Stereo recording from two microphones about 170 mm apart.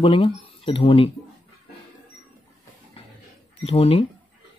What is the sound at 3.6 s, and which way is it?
Speech, 35° left (ahead or behind).